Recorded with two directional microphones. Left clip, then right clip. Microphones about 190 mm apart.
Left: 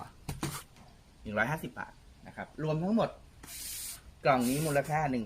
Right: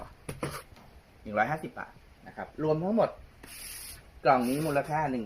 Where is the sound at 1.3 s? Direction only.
30° left (ahead or behind).